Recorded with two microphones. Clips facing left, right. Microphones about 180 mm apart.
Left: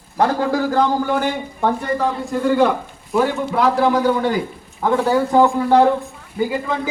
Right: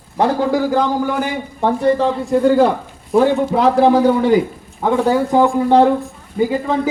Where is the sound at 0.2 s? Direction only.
15° right (ahead or behind).